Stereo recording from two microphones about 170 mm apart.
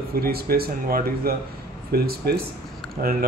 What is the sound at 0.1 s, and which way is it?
Speech, 65° right (ahead or behind).